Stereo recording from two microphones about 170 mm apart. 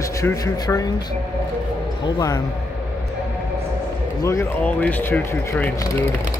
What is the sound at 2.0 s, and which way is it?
Speech, 25° left (ahead or behind).